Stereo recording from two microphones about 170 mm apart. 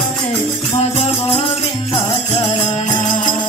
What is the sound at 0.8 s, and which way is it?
Music, 40° left (ahead or behind).